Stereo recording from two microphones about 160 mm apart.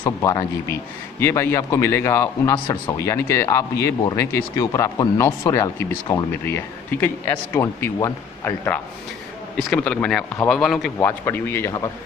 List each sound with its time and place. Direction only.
0.0 s a man's voice: 20° left (ahead or behind); by 10.9 s centre (ahead or behind)
11.0 s speech: 15° left (ahead or behind)